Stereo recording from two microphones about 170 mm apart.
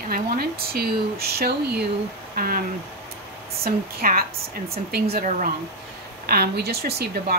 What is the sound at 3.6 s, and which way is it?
Speech, 60° right (ahead or behind).